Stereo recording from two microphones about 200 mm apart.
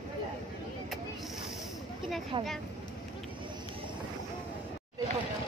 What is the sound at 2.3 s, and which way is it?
Speech, 25° right (ahead or behind).